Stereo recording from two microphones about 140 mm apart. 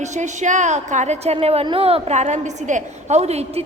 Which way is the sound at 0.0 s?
60° right (ahead or behind).